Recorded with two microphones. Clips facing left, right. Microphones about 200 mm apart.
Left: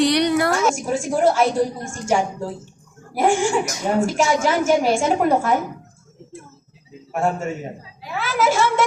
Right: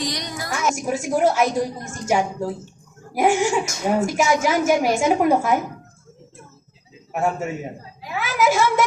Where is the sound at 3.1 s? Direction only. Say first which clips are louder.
Even; 10° right (ahead or behind).